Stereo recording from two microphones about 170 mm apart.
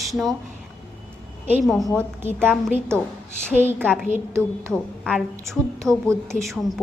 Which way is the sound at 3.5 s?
15° right (ahead or behind).